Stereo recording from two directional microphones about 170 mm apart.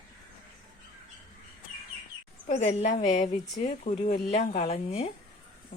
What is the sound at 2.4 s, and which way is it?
Speech, 40° left (ahead or behind).